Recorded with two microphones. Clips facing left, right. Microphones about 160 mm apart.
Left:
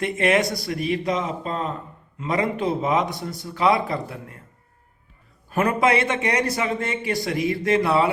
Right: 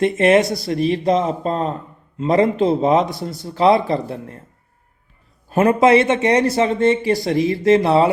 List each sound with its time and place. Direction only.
0.0 s a man's voice: 25° right (ahead or behind)
5.5 s a man's voice: 25° right (ahead or behind)